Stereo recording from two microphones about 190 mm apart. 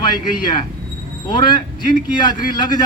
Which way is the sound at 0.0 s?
25° left (ahead or behind).